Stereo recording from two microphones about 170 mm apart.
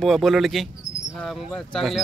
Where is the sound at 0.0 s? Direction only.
Centre (ahead or behind).